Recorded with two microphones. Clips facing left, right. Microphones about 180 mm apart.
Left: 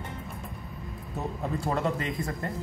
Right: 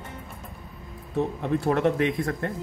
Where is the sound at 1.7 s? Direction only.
70° right (ahead or behind).